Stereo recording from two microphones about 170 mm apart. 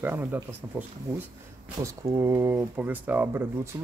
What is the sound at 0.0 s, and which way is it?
Speech, 10° right (ahead or behind).